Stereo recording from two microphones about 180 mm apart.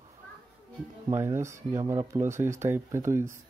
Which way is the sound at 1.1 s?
15° right (ahead or behind).